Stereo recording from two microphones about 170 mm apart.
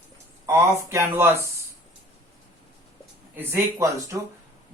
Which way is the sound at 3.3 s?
10° right (ahead or behind).